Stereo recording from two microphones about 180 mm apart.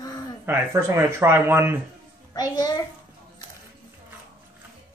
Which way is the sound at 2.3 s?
20° left (ahead or behind).